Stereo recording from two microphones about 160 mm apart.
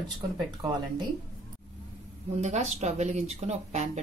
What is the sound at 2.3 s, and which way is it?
Speech, 45° right (ahead or behind).